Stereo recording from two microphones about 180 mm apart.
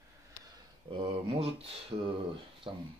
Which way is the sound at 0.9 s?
30° right (ahead or behind).